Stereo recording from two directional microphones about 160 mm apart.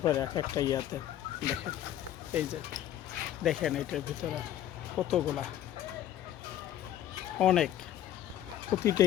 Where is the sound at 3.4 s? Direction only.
Centre (ahead or behind).